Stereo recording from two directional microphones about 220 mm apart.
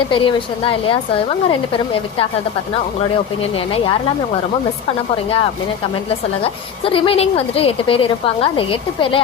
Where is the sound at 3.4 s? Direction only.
25° left (ahead or behind).